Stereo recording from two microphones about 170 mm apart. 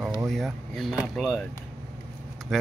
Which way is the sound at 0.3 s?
Centre (ahead or behind).